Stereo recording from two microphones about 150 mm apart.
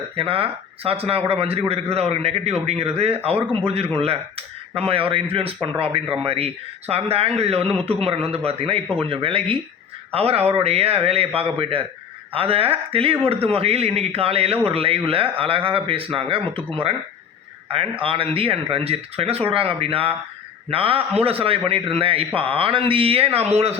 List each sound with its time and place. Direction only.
0.2 s speech: 40° right (ahead or behind)